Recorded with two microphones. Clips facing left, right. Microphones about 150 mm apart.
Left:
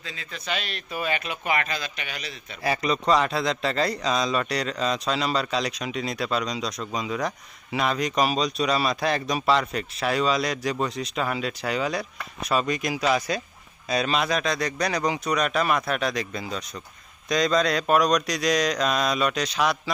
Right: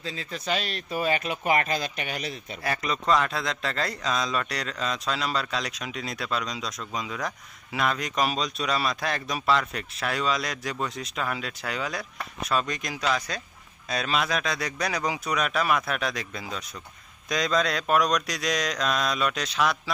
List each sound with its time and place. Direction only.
0.0 s speech: 35° right (ahead or behind)
2.6 s speech: centre (ahead or behind)